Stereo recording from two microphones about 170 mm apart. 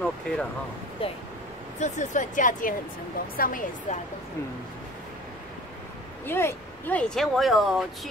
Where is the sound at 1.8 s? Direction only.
45° left (ahead or behind).